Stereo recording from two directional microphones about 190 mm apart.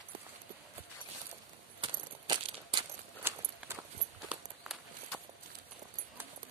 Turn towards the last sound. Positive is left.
turn(degrees=0)  # may be behind; listen again after turning